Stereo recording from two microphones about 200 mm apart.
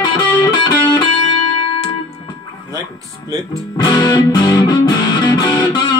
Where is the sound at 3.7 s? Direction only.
20° left (ahead or behind).